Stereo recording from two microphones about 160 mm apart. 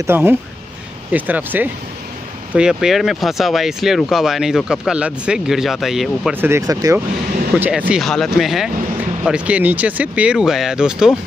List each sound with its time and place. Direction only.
0.0 s speech: 15° right (ahead or behind)
6.3 s speech: 15° right (ahead or behind)